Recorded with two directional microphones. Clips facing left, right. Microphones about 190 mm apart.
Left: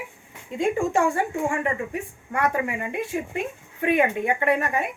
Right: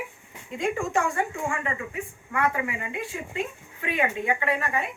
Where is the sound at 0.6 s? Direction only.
30° left (ahead or behind).